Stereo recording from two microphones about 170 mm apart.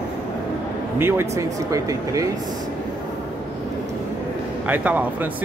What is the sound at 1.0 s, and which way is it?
Speech, 15° right (ahead or behind).